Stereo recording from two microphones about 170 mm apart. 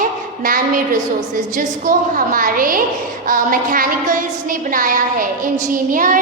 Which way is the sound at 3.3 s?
55° right (ahead or behind).